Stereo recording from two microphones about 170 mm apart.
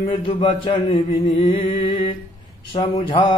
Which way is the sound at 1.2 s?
30° left (ahead or behind).